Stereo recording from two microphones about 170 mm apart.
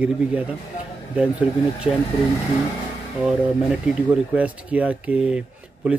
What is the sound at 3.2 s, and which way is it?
Speech, 5° right (ahead or behind).